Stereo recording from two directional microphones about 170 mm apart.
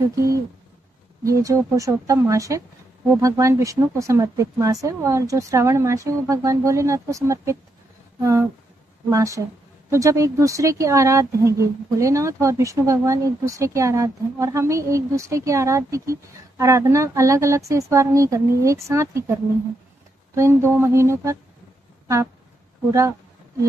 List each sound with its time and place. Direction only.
0.0 s speech: 20° right (ahead or behind)
22.0 s a sound: 15° right (ahead or behind)
22.8 s speech: 15° right (ahead or behind)